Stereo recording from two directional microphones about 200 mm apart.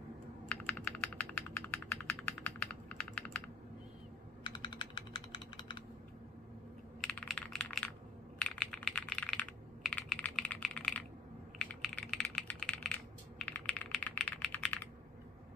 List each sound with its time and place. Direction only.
0.5 s computer keyboard: 5° left (ahead or behind)
4.4 s computer keyboard: 25° left (ahead or behind)
7.0 s computer keyboard: centre (ahead or behind)
11.5 s typing: 5° left (ahead or behind)